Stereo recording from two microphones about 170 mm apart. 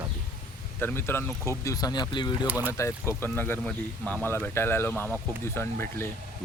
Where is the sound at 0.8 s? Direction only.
15° left (ahead or behind).